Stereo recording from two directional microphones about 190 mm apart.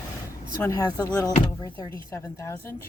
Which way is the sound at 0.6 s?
20° left (ahead or behind).